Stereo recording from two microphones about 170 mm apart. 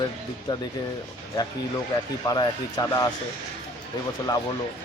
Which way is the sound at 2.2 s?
20° left (ahead or behind).